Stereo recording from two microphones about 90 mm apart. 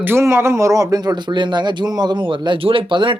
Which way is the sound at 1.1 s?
55° right (ahead or behind).